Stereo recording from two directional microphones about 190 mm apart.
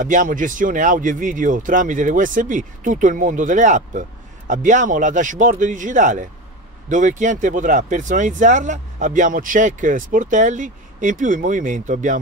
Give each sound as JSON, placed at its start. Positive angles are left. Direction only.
{"t": 0.0, "sound": "speech", "side_deg": -45}